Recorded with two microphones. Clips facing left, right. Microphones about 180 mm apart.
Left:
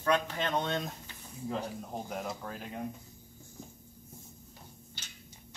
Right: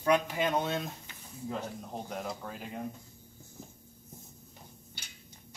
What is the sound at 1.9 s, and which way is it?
Speech, centre (ahead or behind).